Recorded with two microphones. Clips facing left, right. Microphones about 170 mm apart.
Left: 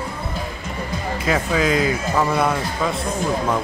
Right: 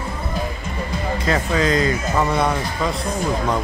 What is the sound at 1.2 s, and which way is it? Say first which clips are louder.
Speech: left 1 dB; 5° left (ahead or behind).